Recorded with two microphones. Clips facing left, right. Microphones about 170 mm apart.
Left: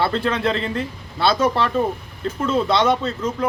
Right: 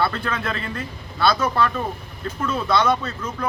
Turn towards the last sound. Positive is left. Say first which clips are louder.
# left 6 dB
turn(degrees=25)  # may be behind; listen again after turning